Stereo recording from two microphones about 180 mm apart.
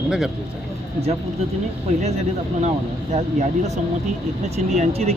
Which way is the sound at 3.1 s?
40° right (ahead or behind).